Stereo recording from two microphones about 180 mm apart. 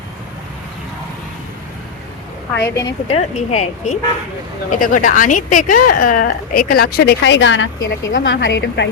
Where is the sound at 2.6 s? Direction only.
20° left (ahead or behind).